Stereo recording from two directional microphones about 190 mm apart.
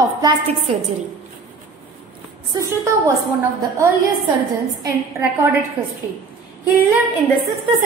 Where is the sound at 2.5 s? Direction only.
15° right (ahead or behind).